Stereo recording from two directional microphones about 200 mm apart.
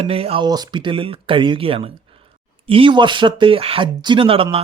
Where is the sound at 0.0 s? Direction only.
30° right (ahead or behind).